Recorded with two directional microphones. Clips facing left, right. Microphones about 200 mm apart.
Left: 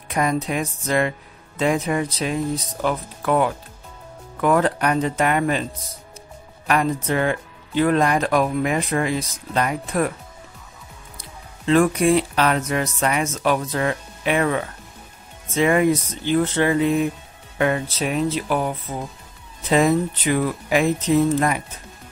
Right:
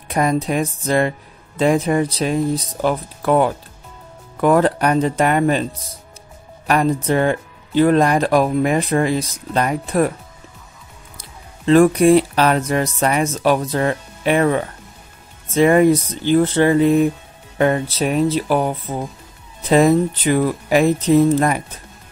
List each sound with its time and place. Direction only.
0.1 s speech: 35° right (ahead or behind)
6.7 s speech: 35° right (ahead or behind)
11.1 s speech: 40° right (ahead or behind)
19.7 s speech: 40° right (ahead or behind)